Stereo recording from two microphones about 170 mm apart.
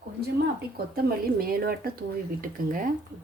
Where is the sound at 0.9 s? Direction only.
60° right (ahead or behind).